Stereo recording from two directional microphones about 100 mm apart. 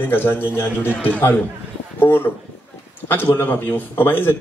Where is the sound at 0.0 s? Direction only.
20° left (ahead or behind).